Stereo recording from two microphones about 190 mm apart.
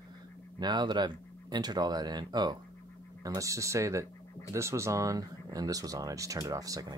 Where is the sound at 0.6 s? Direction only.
20° right (ahead or behind).